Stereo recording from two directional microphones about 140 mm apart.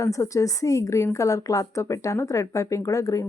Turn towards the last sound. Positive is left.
turn(degrees=25)  # may be behind; listen again after turning